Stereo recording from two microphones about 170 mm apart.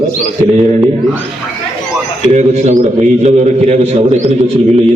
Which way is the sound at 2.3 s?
45° right (ahead or behind).